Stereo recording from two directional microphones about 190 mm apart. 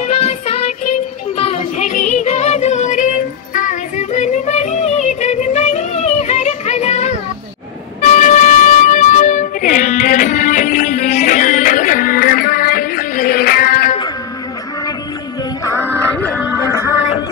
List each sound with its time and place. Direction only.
1.8 s music: 35° left (ahead or behind); by 13.9 s 50° left (ahead or behind)
16.3 s music: 10° right (ahead or behind)